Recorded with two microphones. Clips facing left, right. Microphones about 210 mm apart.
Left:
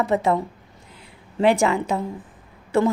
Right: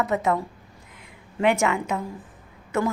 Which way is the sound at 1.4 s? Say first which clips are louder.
Left 3 dB; 30° left (ahead or behind).